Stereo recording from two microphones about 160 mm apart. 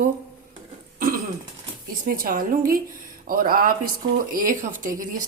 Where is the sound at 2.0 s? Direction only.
60° right (ahead or behind).